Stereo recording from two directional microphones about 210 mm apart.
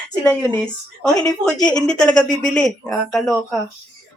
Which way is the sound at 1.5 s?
5° left (ahead or behind).